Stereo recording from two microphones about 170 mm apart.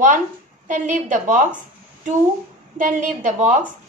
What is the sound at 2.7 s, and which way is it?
Speech, 50° right (ahead or behind).